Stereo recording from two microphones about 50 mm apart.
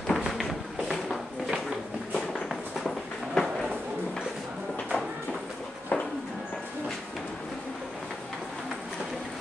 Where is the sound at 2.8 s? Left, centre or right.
Centre.